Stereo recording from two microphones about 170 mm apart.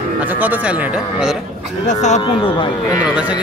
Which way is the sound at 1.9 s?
45° left (ahead or behind).